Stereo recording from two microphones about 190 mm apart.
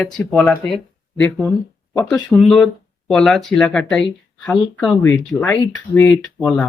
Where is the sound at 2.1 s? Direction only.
Centre (ahead or behind).